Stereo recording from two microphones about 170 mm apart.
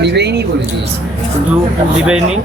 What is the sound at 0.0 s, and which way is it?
Speech, 90° right.